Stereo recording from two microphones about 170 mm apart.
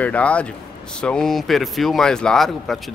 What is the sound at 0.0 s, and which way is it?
Speech, 10° left (ahead or behind).